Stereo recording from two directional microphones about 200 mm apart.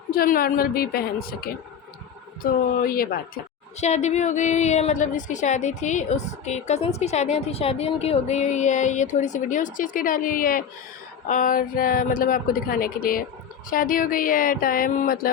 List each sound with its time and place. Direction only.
0.1 s speech: 45° left (ahead or behind)
3.8 s a woman's voice: 35° left (ahead or behind)